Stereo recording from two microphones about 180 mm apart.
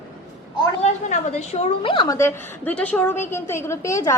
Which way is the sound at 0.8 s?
40° left (ahead or behind).